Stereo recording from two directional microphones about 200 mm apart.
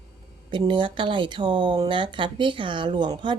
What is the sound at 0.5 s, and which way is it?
Speech, 25° right (ahead or behind).